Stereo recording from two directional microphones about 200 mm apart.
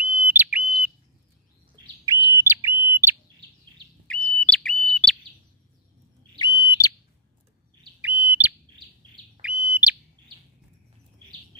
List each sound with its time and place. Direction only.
0.0 s bird: 10° right (ahead or behind)
2.0 s bird: 15° right (ahead or behind)
4.1 s bird: 5° left (ahead or behind)
6.4 s bird: 20° left (ahead or behind)
8.0 s bird: 5° right (ahead or behind)